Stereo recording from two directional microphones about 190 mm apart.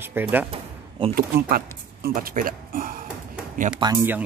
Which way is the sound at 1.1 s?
50° right (ahead or behind).